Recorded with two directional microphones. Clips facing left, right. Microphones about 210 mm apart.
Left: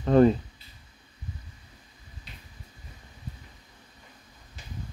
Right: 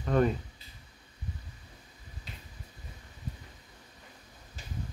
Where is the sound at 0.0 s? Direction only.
30° left (ahead or behind).